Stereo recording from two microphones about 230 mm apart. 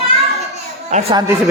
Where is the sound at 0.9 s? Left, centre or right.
Right.